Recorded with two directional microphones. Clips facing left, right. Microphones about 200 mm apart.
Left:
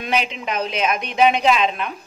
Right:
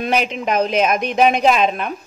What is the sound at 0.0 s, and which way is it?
A woman's voice, 45° right (ahead or behind).